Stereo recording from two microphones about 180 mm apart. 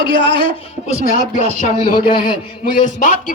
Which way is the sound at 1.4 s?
45° left (ahead or behind).